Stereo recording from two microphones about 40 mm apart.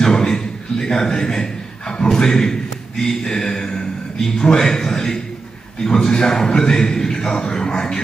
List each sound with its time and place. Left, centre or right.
0.0 s chuckle: centre
3.0 s speech: centre